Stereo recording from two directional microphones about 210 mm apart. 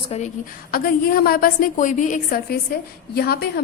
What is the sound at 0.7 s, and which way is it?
A woman's voice, 45° left (ahead or behind).